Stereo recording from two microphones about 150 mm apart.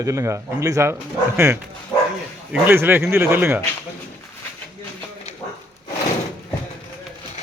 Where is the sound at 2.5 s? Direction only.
15° right (ahead or behind).